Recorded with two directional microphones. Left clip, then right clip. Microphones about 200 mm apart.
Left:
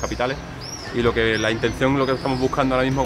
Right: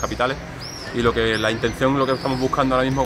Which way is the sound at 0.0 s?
5° left (ahead or behind).